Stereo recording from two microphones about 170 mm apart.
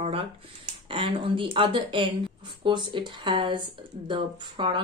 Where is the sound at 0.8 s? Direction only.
30° right (ahead or behind).